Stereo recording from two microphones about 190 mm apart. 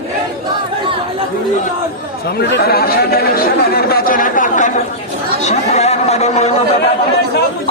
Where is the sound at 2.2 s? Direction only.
60° left (ahead or behind); by 6.5 s 35° left (ahead or behind).